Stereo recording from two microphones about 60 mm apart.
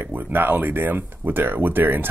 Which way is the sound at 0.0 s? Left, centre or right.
Right.